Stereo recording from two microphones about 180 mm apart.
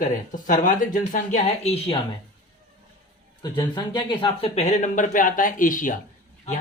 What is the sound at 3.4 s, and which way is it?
Speech, 25° left (ahead or behind).